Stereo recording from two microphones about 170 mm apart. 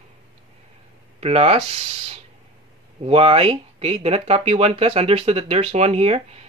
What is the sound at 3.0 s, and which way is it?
Speech, 35° right (ahead or behind).